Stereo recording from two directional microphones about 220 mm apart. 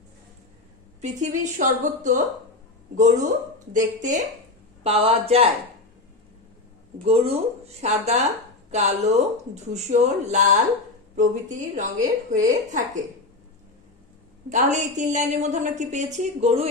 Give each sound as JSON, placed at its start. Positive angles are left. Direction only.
{"t": 1.0, "sound": "a woman's voice", "side_deg": -35}
{"t": 7.1, "sound": "a woman's voice", "side_deg": -25}
{"t": 14.5, "sound": "a woman's voice", "side_deg": -35}